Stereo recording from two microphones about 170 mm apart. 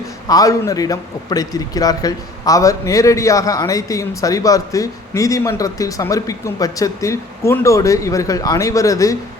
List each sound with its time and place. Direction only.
0.3 s a man's voice: 20° left (ahead or behind)